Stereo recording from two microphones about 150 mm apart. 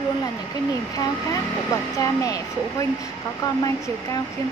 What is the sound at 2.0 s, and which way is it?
Speech, 20° left (ahead or behind).